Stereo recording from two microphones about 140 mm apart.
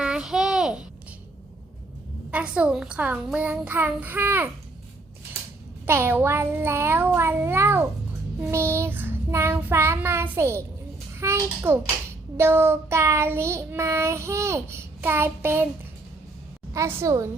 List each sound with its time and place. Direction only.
0.0 s a sound: 5° right (ahead or behind)
2.3 s child singing: 10° right (ahead or behind)
5.8 s child singing: 15° right (ahead or behind)
16.7 s child singing: 20° right (ahead or behind)